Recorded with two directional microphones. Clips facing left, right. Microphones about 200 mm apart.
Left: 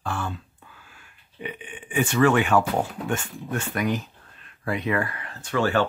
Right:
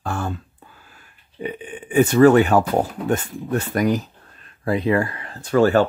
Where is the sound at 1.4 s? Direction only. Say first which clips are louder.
Right 7 dB; 40° right (ahead or behind).